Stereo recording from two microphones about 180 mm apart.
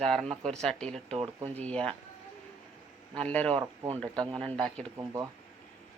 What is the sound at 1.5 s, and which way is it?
Speech, 5° left (ahead or behind).